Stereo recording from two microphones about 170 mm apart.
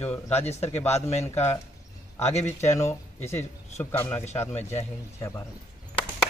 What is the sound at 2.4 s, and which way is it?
Speech, 15° left (ahead or behind).